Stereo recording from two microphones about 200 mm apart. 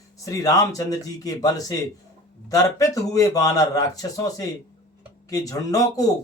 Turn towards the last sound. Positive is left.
turn(degrees=15)  # may be behind; listen again after turning